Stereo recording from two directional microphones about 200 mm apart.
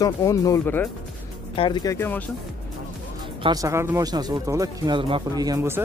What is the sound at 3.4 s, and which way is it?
Speech, 15° right (ahead or behind).